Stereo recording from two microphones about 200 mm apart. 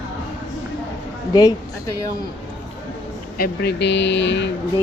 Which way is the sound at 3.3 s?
50° left (ahead or behind).